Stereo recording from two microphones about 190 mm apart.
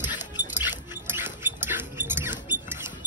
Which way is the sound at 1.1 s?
10° right (ahead or behind).